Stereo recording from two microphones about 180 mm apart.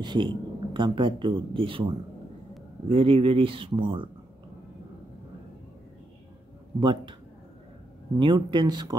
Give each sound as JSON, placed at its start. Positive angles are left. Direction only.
{"t": 0.0, "sound": "speech", "side_deg": -25}
{"t": 6.8, "sound": "speech", "side_deg": -25}
{"t": 8.2, "sound": "speech", "side_deg": -25}